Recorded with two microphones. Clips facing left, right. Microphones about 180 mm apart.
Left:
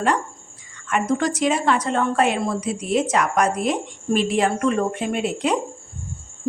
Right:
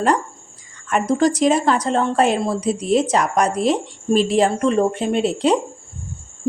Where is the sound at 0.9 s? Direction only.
35° right (ahead or behind).